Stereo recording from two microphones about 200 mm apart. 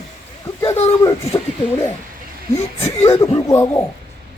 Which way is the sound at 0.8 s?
30° left (ahead or behind).